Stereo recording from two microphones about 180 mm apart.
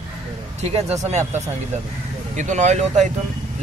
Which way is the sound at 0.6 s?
35° right (ahead or behind).